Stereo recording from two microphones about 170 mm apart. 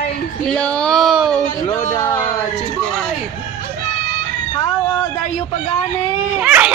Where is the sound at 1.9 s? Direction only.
20° left (ahead or behind).